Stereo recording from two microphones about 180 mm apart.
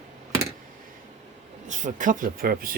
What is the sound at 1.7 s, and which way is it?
Speech, 45° right (ahead or behind).